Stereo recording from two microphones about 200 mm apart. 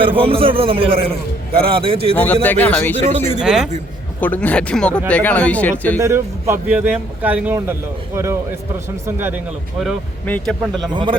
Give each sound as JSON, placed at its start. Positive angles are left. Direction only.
{"t": 0.0, "sound": "a man's voice", "side_deg": -25}
{"t": 2.1, "sound": "speech", "side_deg": 10}
{"t": 3.0, "sound": "speech", "side_deg": -35}
{"t": 3.4, "sound": "speech", "side_deg": 0}
{"t": 4.2, "sound": "speech", "side_deg": 10}
{"t": 6.0, "sound": "speech", "side_deg": -15}
{"t": 9.8, "sound": "speech", "side_deg": 5}
{"t": 10.9, "sound": "a man's voice", "side_deg": -25}